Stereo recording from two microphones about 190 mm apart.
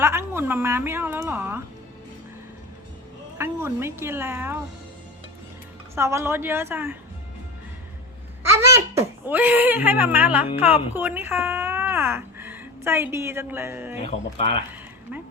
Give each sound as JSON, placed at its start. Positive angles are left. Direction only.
{"t": 0.0, "sound": "a child's voice", "side_deg": -15}
{"t": 3.3, "sound": "a child's voice", "side_deg": -10}
{"t": 5.9, "sound": "a child's voice", "side_deg": -15}
{"t": 8.5, "sound": "a child's voice", "side_deg": -15}
{"t": 14.0, "sound": "speech", "side_deg": 30}